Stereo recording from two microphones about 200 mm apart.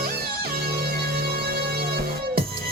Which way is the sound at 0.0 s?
50° right (ahead or behind).